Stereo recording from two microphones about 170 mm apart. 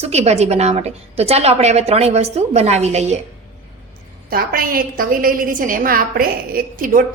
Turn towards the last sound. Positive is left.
turn(degrees=-55)  # may be behind; listen again after turning